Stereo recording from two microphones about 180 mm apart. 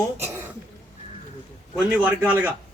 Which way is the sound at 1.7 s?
5° right (ahead or behind).